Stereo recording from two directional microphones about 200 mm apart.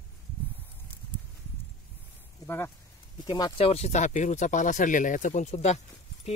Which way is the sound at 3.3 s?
25° left (ahead or behind).